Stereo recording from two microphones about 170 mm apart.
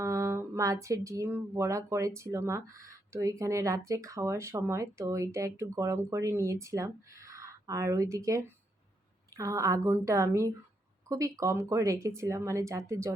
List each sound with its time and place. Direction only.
0.0 s speech: 20° right (ahead or behind)